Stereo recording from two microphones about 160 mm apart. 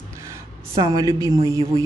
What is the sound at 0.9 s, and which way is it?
Speech, 20° right (ahead or behind).